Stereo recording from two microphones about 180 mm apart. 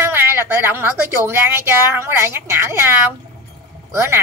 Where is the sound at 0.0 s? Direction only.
15° right (ahead or behind).